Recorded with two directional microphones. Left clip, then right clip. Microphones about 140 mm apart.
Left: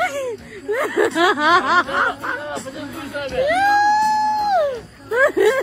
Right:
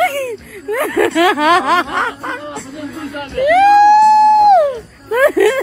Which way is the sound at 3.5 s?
15° right (ahead or behind).